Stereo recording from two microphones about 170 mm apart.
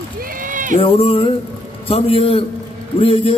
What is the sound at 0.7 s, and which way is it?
Music, 35° left (ahead or behind).